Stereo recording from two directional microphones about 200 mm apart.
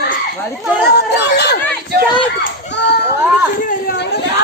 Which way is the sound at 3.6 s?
45° left (ahead or behind).